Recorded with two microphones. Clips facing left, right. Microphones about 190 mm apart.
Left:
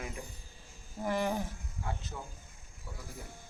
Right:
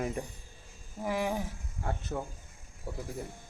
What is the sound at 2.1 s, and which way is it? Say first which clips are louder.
Speech: right 8 dB; 55° right (ahead or behind).